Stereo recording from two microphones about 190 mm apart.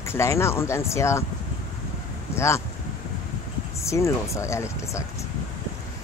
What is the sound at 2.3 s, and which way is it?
Speech, 15° left (ahead or behind).